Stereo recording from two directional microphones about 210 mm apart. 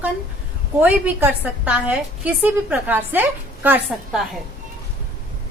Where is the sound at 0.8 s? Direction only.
5° right (ahead or behind).